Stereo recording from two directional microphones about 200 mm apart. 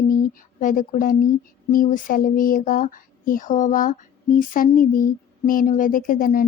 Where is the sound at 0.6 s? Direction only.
40° left (ahead or behind).